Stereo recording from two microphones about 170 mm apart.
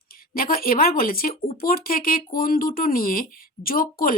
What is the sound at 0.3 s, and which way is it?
Speech, 60° left (ahead or behind).